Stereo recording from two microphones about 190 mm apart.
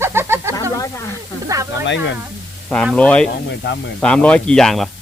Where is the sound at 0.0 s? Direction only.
15° right (ahead or behind).